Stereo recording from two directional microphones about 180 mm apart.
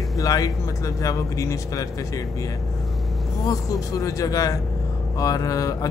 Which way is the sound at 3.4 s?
20° left (ahead or behind).